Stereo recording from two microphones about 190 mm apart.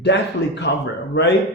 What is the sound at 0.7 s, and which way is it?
Speech, 60° left (ahead or behind).